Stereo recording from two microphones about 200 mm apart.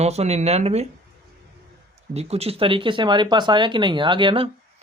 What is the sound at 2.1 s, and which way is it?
Speech, 30° right (ahead or behind).